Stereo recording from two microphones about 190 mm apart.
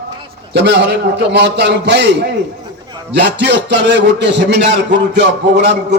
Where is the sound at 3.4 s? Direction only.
65° right (ahead or behind).